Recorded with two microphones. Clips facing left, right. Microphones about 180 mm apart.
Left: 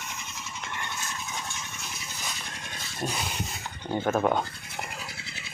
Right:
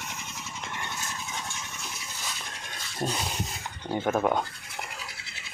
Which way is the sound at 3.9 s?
Centre (ahead or behind).